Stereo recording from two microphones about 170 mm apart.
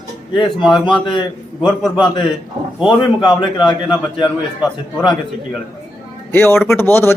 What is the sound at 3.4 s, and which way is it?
Speech, 25° left (ahead or behind).